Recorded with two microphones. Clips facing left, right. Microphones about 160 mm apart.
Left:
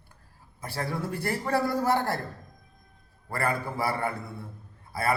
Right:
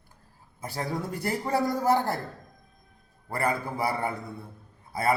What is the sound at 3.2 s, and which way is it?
Speech, 20° right (ahead or behind).